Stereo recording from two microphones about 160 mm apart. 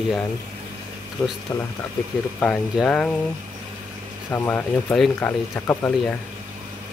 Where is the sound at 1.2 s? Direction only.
15° left (ahead or behind).